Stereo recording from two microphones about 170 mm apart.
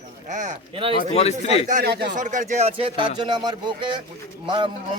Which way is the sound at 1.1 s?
35° left (ahead or behind).